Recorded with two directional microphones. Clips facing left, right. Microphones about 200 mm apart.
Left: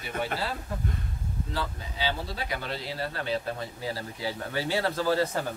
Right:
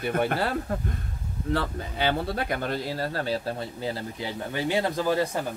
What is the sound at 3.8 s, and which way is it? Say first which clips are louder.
Speech: right 2 dB; 25° right (ahead or behind).